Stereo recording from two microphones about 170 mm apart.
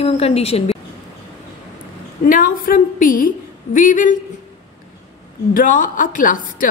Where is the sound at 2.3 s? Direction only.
55° left (ahead or behind).